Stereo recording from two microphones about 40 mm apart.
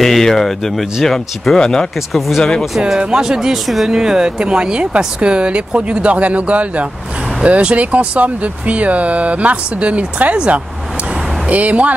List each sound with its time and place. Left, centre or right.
0.0 s speech: centre
2.1 s speech: centre
3.0 s speech: centre
3.6 s speech: centre
3.9 s speech: centre; by 11.9 s right